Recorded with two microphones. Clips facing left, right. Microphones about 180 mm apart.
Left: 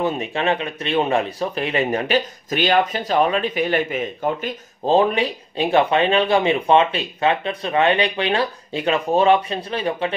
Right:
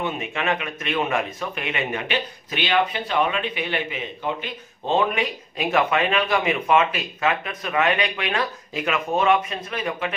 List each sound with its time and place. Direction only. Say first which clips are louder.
0.0 s speech: left 5 dB; 35° left (ahead or behind)